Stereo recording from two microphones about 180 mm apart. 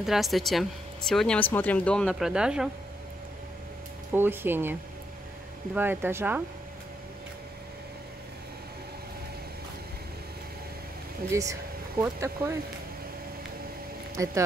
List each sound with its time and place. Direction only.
0.0 s speech: centre (ahead or behind)
4.1 s speech: 10° right (ahead or behind)
5.8 s speech: 10° right (ahead or behind)
11.2 s speech: 20° right (ahead or behind)
14.1 s speech: 15° right (ahead or behind)